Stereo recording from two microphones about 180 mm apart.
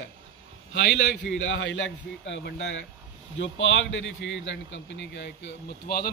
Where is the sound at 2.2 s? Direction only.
80° left; by 6.0 s 65° left (ahead or behind).